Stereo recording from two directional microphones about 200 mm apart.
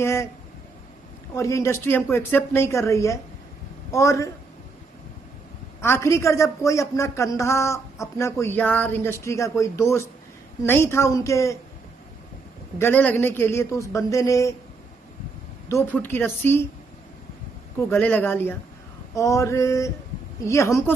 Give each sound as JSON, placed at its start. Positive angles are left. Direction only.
{"t": 0.0, "sound": "speech", "side_deg": 15}
{"t": 1.3, "sound": "a woman's voice", "side_deg": 15}
{"t": 5.8, "sound": "a woman's voice", "side_deg": 15}
{"t": 12.7, "sound": "a woman's voice", "side_deg": 10}
{"t": 15.7, "sound": "a woman's voice", "side_deg": 10}
{"t": 17.7, "sound": "a woman's voice", "side_deg": 10}